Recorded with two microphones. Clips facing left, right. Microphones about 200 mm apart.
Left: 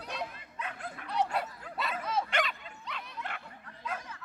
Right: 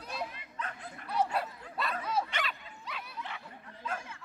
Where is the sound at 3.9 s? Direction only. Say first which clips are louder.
Even; 25° right (ahead or behind).